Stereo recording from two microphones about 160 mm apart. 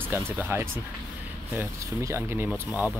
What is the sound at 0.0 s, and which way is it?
Speech, 10° right (ahead or behind).